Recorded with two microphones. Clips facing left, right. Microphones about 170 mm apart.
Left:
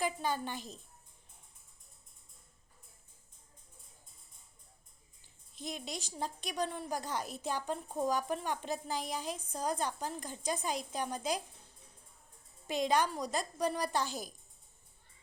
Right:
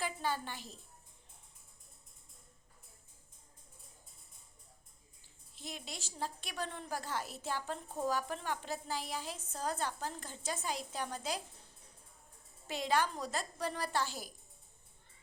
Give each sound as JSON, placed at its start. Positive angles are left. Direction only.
{"t": 0.0, "sound": "a woman's voice", "side_deg": 15}
{"t": 5.5, "sound": "a woman's voice", "side_deg": 20}
{"t": 12.6, "sound": "a woman's voice", "side_deg": 15}